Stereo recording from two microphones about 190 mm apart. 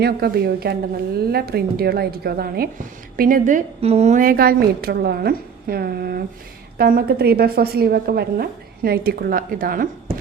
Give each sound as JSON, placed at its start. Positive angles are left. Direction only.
{"t": 0.0, "sound": "a woman's voice", "side_deg": -55}